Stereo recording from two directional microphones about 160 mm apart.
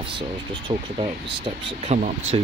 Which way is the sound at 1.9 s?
40° right (ahead or behind).